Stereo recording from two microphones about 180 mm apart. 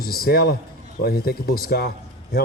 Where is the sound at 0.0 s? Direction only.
60° left (ahead or behind).